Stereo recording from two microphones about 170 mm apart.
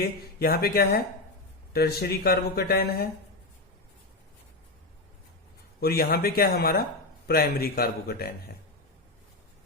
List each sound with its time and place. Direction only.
0.0 s speech: 65° left (ahead or behind)
5.8 s speech: 65° left (ahead or behind)